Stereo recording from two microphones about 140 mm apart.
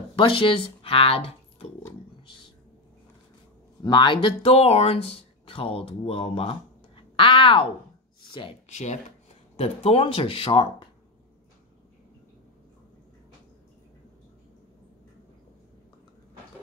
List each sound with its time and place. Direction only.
0.1 s speech: 35° left (ahead or behind)
3.8 s speech: 35° left (ahead or behind)
8.7 s speech: 55° left (ahead or behind)
9.6 s speech: 45° left (ahead or behind)